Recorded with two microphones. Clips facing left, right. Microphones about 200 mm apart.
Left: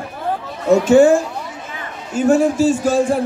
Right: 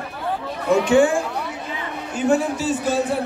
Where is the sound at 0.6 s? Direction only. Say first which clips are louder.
Left 5 dB; 45° left (ahead or behind).